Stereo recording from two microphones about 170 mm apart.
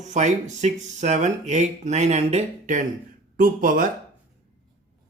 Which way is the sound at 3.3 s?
55° right (ahead or behind).